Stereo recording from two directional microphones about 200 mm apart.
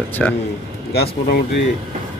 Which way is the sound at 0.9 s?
55° left (ahead or behind).